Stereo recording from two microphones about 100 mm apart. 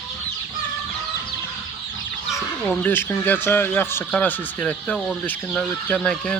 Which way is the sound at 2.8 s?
20° left (ahead or behind).